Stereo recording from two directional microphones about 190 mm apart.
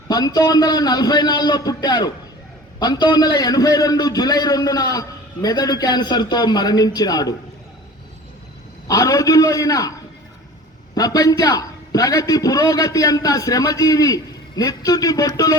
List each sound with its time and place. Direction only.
0.1 s a man's voice: 20° left (ahead or behind)
8.9 s a man's voice: 15° left (ahead or behind)
10.9 s a man's voice: 20° left (ahead or behind)